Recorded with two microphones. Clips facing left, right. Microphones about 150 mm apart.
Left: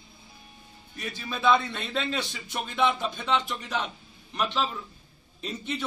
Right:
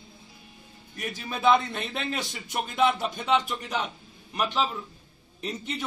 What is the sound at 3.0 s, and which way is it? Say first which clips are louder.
Speech: right 2 dB; 10° right (ahead or behind).